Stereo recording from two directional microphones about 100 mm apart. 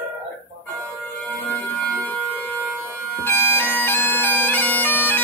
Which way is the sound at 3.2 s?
25° left (ahead or behind).